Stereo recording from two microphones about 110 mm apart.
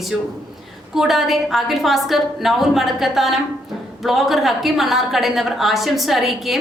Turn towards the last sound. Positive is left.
turn(degrees=0)  # may be behind; listen again after turning